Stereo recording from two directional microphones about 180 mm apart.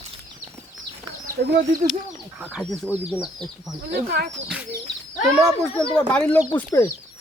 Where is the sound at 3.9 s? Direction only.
65° right (ahead or behind).